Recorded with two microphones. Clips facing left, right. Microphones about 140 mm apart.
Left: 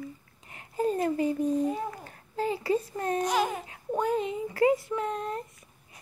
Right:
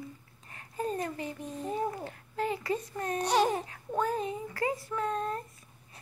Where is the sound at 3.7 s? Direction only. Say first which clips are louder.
Left 3 dB; 20° left (ahead or behind).